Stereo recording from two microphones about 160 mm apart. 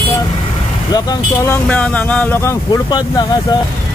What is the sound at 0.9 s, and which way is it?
Speech, 20° left (ahead or behind).